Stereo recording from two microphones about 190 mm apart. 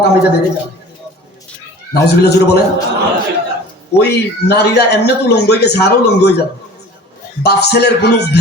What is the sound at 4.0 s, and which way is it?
A man's voice, 60° left (ahead or behind).